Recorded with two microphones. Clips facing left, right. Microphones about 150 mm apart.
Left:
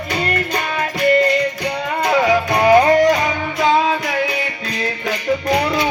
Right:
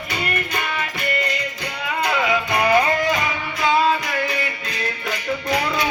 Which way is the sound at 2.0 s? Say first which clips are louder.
Left 5 dB; 40° left (ahead or behind).